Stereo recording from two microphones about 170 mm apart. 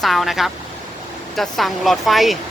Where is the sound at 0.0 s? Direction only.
Centre (ahead or behind).